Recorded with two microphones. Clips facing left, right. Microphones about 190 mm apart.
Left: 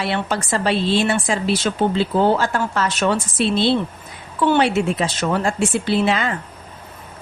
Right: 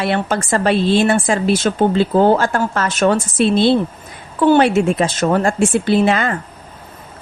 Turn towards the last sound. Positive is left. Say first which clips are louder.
# right 4 dB
turn(degrees=-50)  # may be behind; listen again after turning